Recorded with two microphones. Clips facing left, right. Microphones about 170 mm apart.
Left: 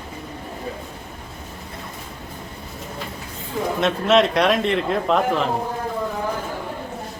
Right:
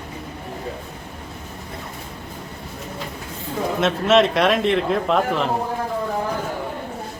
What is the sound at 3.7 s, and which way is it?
Speech, centre (ahead or behind).